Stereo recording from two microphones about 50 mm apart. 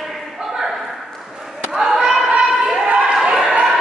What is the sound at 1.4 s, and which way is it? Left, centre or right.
Basketball bounce, centre.